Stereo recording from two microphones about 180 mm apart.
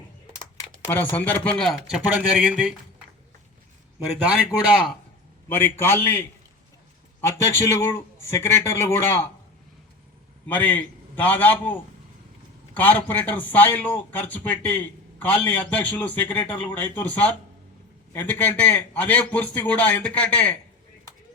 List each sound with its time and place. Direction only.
0.9 s speech: 10° left (ahead or behind)
5.5 s a man's voice: 10° left (ahead or behind)
10.4 s a man's voice: 10° left (ahead or behind)